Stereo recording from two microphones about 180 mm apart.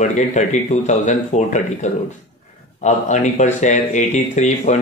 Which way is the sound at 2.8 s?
40° left (ahead or behind).